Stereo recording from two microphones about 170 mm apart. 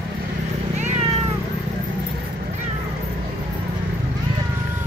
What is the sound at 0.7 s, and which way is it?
Cat, 45° right (ahead or behind).